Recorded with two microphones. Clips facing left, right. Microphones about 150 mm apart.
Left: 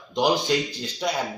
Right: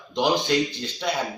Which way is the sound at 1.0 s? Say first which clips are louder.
Even; 5° left (ahead or behind).